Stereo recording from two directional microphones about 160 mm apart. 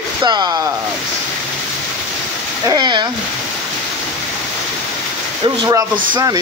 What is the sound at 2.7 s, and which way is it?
Speech, 25° right (ahead or behind).